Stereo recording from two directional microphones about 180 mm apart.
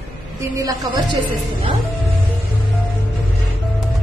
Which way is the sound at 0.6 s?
25° right (ahead or behind).